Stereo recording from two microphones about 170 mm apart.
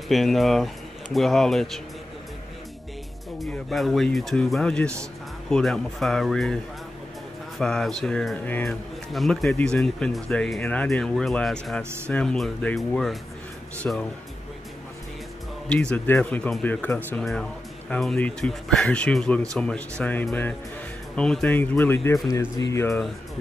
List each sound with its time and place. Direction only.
0.1 s speech: centre (ahead or behind)
3.3 s speech: centre (ahead or behind)
15.7 s speech: 5° left (ahead or behind)